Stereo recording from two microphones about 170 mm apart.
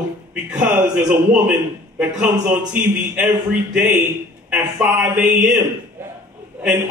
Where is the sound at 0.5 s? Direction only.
10° right (ahead or behind).